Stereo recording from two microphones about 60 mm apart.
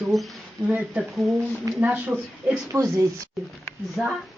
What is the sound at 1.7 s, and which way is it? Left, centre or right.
Speech, right.